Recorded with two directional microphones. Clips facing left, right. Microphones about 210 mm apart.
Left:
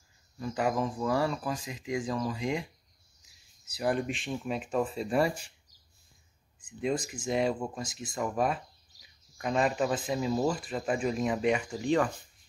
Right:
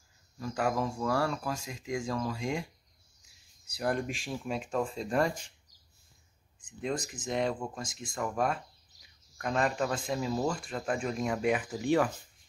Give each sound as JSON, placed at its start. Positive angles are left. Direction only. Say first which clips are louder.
{"t": 0.4, "sound": "speech", "louder": "left 1 dB", "side_deg": 5}
{"t": 3.6, "sound": "speech", "louder": "left 2 dB", "side_deg": 5}
{"t": 6.6, "sound": "speech", "louder": "left 3 dB", "side_deg": 5}